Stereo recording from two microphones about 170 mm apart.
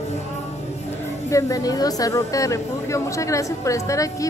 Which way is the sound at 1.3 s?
20° left (ahead or behind).